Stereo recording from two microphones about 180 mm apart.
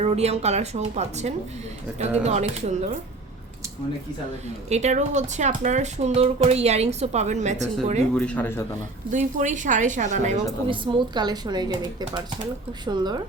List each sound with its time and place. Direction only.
0.0 s speech: 35° right (ahead or behind)
4.7 s speech: 40° right (ahead or behind)
8.1 s a man's voice: 5° left (ahead or behind)
9.1 s a woman's voice: 45° right (ahead or behind)
10.7 s speech: 25° right (ahead or behind)